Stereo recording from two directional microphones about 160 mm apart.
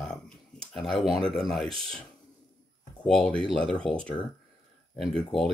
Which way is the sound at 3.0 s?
5° left (ahead or behind).